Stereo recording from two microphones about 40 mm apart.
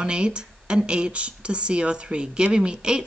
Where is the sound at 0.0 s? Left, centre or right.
Right.